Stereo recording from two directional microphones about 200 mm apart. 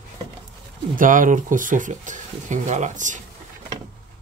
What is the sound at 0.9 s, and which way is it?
Speech, 40° right (ahead or behind).